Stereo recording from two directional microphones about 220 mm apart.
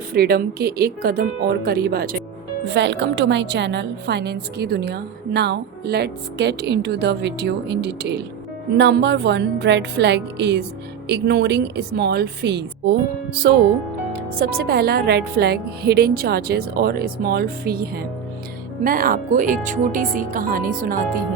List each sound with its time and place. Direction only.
0.1 s a woman's voice: 45° right (ahead or behind)
14.1 s a woman's voice: 45° right (ahead or behind)